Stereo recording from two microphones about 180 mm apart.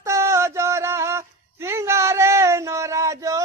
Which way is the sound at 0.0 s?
15° right (ahead or behind).